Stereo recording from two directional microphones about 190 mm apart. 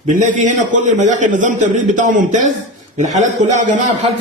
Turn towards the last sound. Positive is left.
turn(degrees=-40)  # may be behind; listen again after turning